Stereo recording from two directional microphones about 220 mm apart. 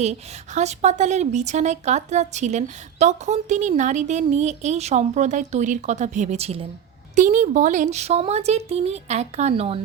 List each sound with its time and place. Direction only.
0.0 s a woman's voice: 30° right (ahead or behind)